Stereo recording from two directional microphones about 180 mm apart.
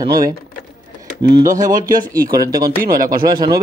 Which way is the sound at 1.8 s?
50° right (ahead or behind).